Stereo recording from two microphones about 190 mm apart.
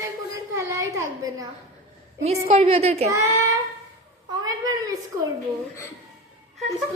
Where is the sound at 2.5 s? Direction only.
30° right (ahead or behind).